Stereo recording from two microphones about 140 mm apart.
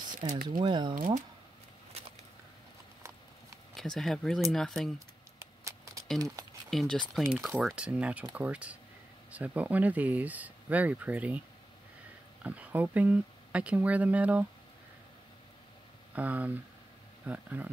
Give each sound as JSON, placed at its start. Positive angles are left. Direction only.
{"t": 0.2, "sound": "speech", "side_deg": -35}
{"t": 0.9, "sound": "speech", "side_deg": -80}
{"t": 3.7, "sound": "speech", "side_deg": 5}
{"t": 5.4, "sound": "a sound", "side_deg": -20}
{"t": 6.7, "sound": "speech", "side_deg": 0}
{"t": 7.7, "sound": "speech", "side_deg": -10}
{"t": 12.4, "sound": "speech", "side_deg": -10}
{"t": 16.2, "sound": "speech", "side_deg": -10}